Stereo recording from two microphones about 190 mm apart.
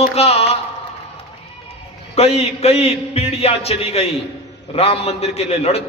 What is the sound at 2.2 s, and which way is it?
Speech, 35° left (ahead or behind).